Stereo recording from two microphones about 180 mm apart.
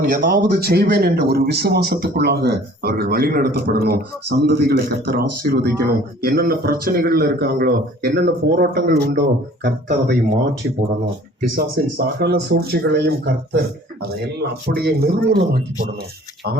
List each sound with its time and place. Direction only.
0.0 s speech: 60° right (ahead or behind)
11.5 s speech: 60° right (ahead or behind)